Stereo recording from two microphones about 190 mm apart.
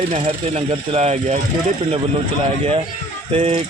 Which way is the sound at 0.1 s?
35° right (ahead or behind).